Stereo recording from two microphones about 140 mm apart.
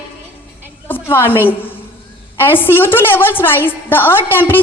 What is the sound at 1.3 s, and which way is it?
A woman's voice, 15° left (ahead or behind).